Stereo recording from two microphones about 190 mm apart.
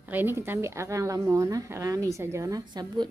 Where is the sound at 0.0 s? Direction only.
10° right (ahead or behind).